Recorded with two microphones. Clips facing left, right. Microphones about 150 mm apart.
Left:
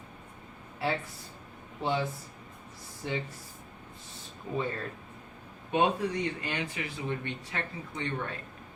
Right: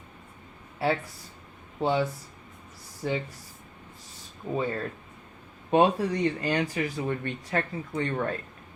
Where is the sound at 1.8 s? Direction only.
30° right (ahead or behind).